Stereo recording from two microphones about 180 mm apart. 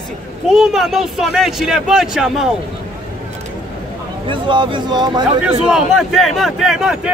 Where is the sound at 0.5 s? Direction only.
Centre (ahead or behind).